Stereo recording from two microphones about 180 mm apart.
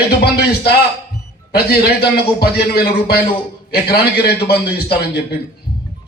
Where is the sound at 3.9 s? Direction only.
65° left (ahead or behind).